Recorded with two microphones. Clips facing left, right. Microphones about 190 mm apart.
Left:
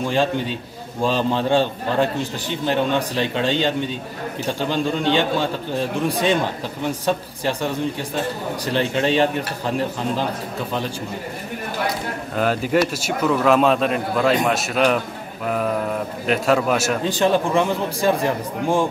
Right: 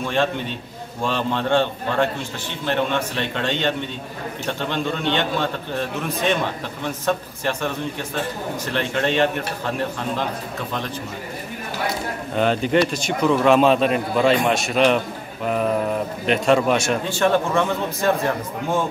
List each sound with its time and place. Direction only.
0.0 s a man's voice: 15° left (ahead or behind)
4.6 s a man's voice: 10° left (ahead or behind)
6.9 s a man's voice: 15° left (ahead or behind)
8.7 s a man's voice: 10° left (ahead or behind)
12.4 s a man's voice: 5° left (ahead or behind)
17.1 s a man's voice: 15° left (ahead or behind)